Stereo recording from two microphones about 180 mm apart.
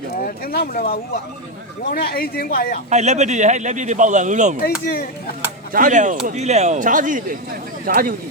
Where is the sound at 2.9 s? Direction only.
40° right (ahead or behind).